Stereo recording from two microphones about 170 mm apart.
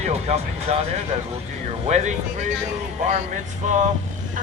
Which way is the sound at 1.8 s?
40° right (ahead or behind).